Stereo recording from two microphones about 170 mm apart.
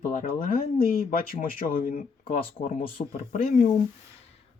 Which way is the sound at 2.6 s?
40° left (ahead or behind).